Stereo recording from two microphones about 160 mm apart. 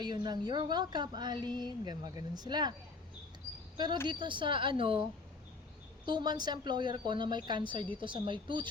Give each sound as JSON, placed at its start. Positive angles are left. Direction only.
{"t": 0.0, "sound": "a woman's voice", "side_deg": -25}
{"t": 4.0, "sound": "speech", "side_deg": -30}
{"t": 6.1, "sound": "a woman's voice", "side_deg": -30}